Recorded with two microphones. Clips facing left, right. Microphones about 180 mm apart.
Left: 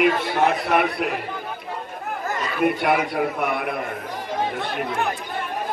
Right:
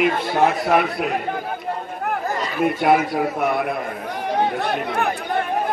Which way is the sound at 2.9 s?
45° right (ahead or behind).